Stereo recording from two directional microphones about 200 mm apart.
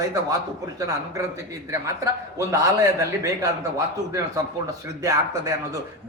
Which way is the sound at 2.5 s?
15° right (ahead or behind).